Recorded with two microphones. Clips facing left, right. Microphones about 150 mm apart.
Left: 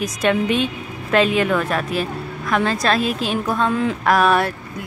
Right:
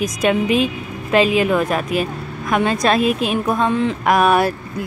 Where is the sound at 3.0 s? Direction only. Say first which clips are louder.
Right 4 dB; 30° left (ahead or behind).